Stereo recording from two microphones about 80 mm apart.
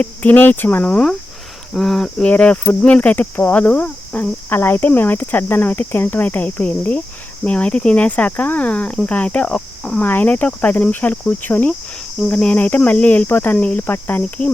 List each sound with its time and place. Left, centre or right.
0.0 s speech: left
1.7 s speech: centre
2.3 s speech: centre
10.0 s speech: left
12.3 s speech: centre; by 14.2 s left
14.2 s speech: centre